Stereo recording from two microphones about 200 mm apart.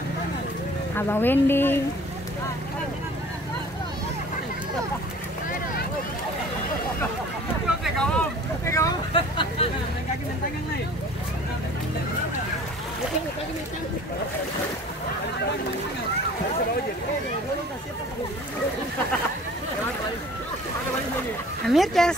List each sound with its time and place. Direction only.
0.9 s a woman's voice: 10° left (ahead or behind)
7.6 s vehicle: centre (ahead or behind)
9.1 s vehicle: 25° left (ahead or behind)
21.6 s speech: centre (ahead or behind)